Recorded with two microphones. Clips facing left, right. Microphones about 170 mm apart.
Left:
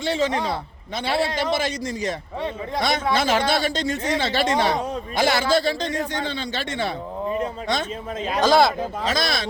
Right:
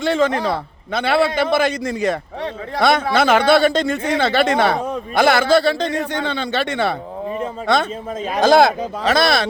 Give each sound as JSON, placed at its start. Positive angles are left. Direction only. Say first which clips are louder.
{"t": 0.0, "sound": "a man's voice", "louder": "right 5 dB", "side_deg": -55}
{"t": 9.0, "sound": "speech", "louder": "right 10 dB", "side_deg": -65}